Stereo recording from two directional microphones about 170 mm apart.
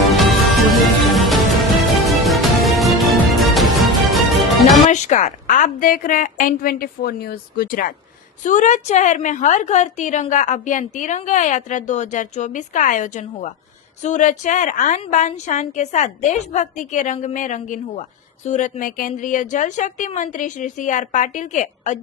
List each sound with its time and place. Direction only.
0.7 s music: centre (ahead or behind)
4.9 s a woman's voice: 45° left (ahead or behind)
8.4 s a woman's voice: 45° left (ahead or behind)